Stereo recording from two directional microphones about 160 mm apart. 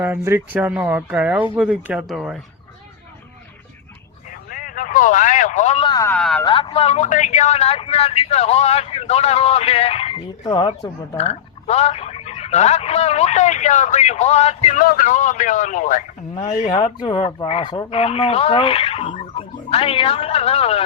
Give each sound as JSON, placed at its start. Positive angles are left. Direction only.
{"t": 0.0, "sound": "speech", "side_deg": -15}
{"t": 4.3, "sound": "a sound", "side_deg": 60}
{"t": 5.8, "sound": "speech", "side_deg": 25}
{"t": 6.1, "sound": "speech", "side_deg": 5}
{"t": 6.4, "sound": "speech", "side_deg": 30}
{"t": 11.2, "sound": "speech", "side_deg": 40}
{"t": 14.8, "sound": "speech", "side_deg": 60}
{"t": 16.3, "sound": "speech", "side_deg": 25}
{"t": 17.9, "sound": "speech", "side_deg": 40}